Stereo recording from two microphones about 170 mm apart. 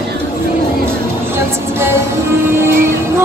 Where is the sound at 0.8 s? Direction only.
15° right (ahead or behind).